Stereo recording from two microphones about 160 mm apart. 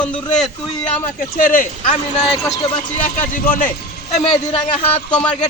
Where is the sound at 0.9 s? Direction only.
60° left (ahead or behind).